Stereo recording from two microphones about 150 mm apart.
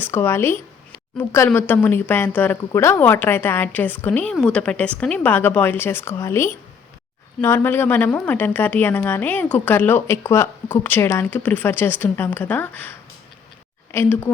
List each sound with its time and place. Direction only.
0.0 s a woman's voice: 15° left (ahead or behind)
13.9 s a woman's voice: 15° left (ahead or behind)